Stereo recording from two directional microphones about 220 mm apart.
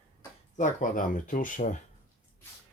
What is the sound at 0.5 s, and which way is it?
Speech, 35° left (ahead or behind).